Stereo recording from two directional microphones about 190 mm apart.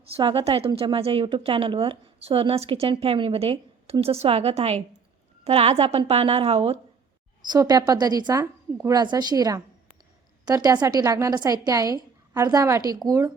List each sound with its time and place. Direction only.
0.1 s a woman's voice: 30° right (ahead or behind)